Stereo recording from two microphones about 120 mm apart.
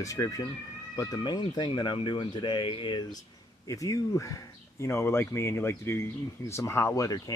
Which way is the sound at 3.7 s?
25° left (ahead or behind).